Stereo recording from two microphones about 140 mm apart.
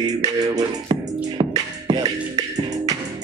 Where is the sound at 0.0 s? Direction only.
30° right (ahead or behind).